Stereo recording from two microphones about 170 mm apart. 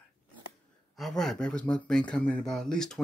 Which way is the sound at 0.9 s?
Centre (ahead or behind).